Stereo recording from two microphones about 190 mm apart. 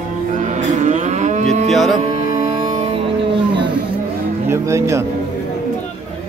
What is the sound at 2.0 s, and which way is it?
Music, 30° right (ahead or behind).